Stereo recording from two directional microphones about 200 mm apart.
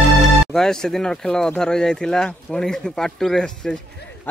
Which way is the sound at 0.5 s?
5° left (ahead or behind).